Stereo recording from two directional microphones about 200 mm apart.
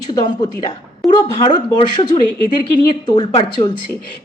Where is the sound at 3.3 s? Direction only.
25° left (ahead or behind).